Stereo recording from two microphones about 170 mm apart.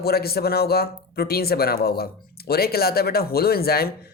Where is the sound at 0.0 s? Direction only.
65° left (ahead or behind).